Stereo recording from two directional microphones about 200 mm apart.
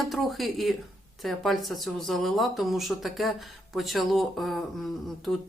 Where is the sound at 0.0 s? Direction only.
Centre (ahead or behind).